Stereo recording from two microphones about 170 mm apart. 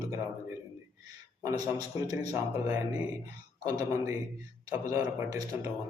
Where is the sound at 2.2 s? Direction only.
20° right (ahead or behind).